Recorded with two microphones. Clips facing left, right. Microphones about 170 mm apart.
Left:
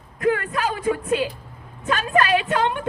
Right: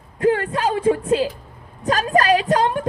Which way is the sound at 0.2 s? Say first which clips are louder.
Right 3 dB; 30° right (ahead or behind).